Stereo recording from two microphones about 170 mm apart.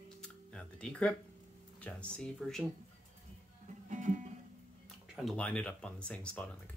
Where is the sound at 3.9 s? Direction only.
45° right (ahead or behind).